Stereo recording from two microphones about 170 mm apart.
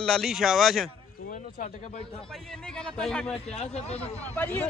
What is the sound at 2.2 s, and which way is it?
Speech, centre (ahead or behind).